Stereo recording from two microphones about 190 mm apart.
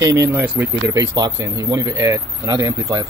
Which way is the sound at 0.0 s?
10° right (ahead or behind).